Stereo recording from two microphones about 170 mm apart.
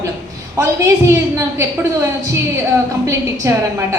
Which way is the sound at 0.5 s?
20° right (ahead or behind).